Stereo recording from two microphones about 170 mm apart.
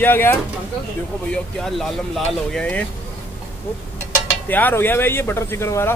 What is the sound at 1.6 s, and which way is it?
Speech, 5° left (ahead or behind).